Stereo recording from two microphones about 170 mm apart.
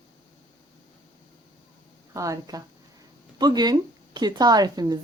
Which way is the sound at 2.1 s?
20° right (ahead or behind).